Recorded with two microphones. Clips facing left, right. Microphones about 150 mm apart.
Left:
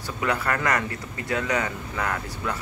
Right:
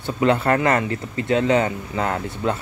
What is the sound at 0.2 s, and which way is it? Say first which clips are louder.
Speech: right 8 dB; 25° right (ahead or behind).